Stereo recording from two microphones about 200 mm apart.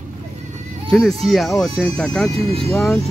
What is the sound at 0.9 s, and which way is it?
Speech, centre (ahead or behind).